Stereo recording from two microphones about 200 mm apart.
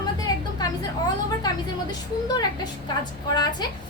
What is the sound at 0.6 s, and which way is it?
A woman's voice, 20° left (ahead or behind).